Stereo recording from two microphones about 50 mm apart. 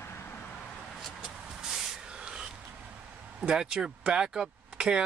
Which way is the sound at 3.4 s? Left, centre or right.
Centre.